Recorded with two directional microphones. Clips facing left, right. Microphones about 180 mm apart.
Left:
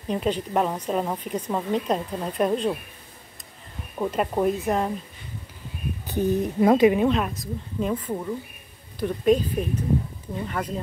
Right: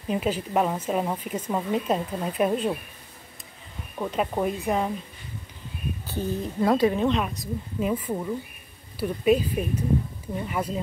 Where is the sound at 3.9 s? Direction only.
5° left (ahead or behind).